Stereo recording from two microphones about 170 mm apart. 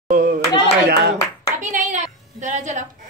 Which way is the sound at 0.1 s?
55° right (ahead or behind).